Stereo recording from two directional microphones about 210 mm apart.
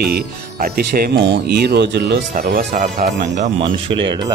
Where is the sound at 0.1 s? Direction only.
45° right (ahead or behind).